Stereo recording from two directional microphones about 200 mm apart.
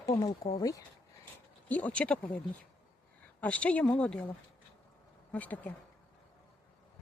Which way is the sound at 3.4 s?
5° left (ahead or behind).